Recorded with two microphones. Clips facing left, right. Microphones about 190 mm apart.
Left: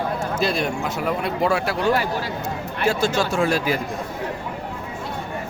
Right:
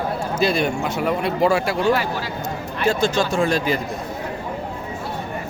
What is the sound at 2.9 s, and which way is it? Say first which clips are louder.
Speech: right 1 dB; 5° left (ahead or behind).